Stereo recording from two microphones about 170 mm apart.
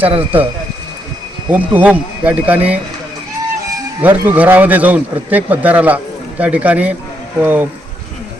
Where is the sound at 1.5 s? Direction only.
10° right (ahead or behind).